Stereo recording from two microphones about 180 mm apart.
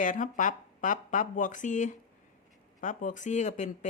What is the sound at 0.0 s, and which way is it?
Speech, 45° left (ahead or behind).